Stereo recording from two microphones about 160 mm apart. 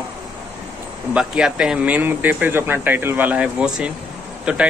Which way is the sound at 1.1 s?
5° right (ahead or behind).